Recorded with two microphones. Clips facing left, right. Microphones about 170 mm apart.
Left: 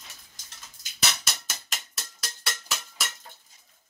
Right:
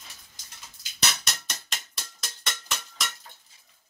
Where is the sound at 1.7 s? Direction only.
5° left (ahead or behind).